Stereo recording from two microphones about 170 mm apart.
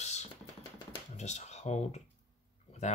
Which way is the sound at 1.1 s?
45° left (ahead or behind).